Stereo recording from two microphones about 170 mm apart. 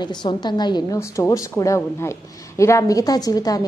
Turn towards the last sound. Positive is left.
turn(degrees=20)  # may be behind; listen again after turning